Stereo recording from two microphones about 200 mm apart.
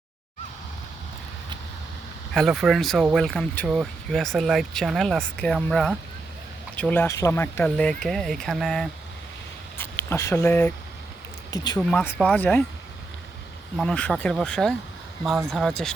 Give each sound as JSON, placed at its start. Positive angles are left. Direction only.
{"t": 2.3, "sound": "speech", "side_deg": 0}
{"t": 9.7, "sound": "a sound", "side_deg": 10}
{"t": 11.5, "sound": "speech", "side_deg": 20}
{"t": 11.8, "sound": "speech", "side_deg": 5}
{"t": 13.7, "sound": "speech", "side_deg": 5}